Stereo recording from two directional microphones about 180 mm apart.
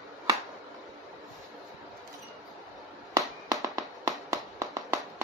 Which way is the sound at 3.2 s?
20° right (ahead or behind).